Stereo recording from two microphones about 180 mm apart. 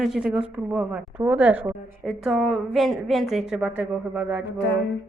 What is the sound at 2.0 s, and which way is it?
Speech, centre (ahead or behind).